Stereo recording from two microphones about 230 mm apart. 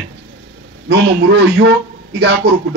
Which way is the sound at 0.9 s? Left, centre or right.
Right.